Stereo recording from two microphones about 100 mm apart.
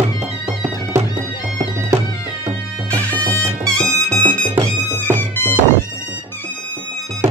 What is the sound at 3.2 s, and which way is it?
Music, 35° right (ahead or behind).